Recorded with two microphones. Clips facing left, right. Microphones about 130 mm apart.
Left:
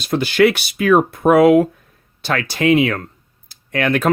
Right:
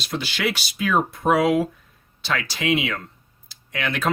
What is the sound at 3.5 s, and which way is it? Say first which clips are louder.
Computer keyboard: left 9 dB; 50° left (ahead or behind).